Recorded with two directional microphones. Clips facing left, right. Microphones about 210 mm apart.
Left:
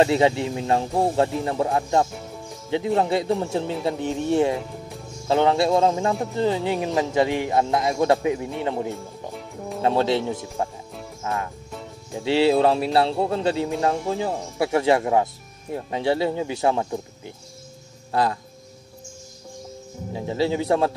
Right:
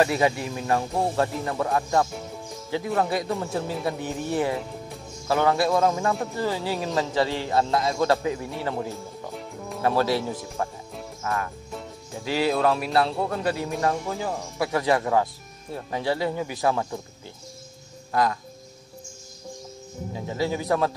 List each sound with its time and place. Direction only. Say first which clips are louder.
0.0 s speech: left 4 dB; 25° left (ahead or behind)
9.3 s music: left 2 dB; centre (ahead or behind)
9.8 s speech: left 2 dB; 25° left (ahead or behind)
18.1 s speech: left 1 dB; 30° left (ahead or behind)
20.2 s speech: left 4 dB; 25° left (ahead or behind)